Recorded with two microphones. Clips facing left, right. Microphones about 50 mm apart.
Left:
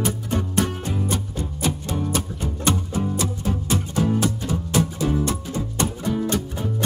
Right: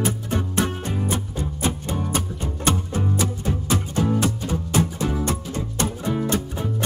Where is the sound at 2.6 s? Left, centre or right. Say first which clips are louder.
Even; right.